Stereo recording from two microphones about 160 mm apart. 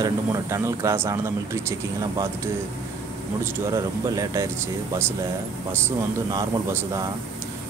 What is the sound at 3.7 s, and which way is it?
Speech, 20° right (ahead or behind).